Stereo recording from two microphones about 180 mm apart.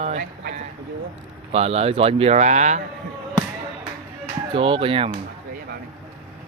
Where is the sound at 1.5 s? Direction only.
35° right (ahead or behind).